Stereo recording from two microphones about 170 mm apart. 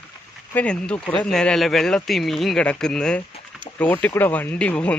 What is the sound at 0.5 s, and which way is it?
Speech, 5° left (ahead or behind).